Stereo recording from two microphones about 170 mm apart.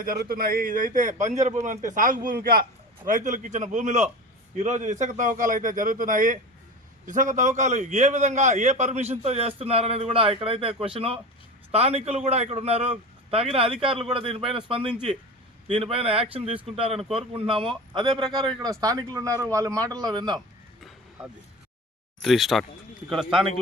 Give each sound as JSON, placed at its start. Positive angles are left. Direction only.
{"t": 0.0, "sound": "a man's voice", "side_deg": -60}
{"t": 22.2, "sound": "speech", "side_deg": 0}